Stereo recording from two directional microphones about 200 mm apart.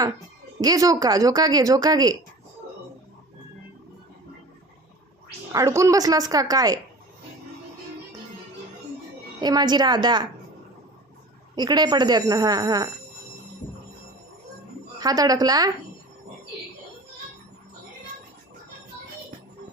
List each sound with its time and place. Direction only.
0.6 s a woman's voice: 20° right (ahead or behind)
5.5 s speech: 15° right (ahead or behind)
9.4 s a woman's voice: 20° right (ahead or behind)
11.5 s a woman's voice: 20° right (ahead or behind)
14.9 s a woman's voice: 20° right (ahead or behind)